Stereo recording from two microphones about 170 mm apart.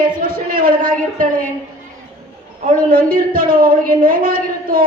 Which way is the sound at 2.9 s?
55° right (ahead or behind).